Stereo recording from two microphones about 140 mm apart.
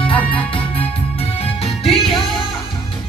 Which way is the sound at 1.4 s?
45° left (ahead or behind).